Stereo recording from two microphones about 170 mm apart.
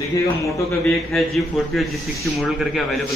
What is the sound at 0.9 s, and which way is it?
A man's voice, centre (ahead or behind).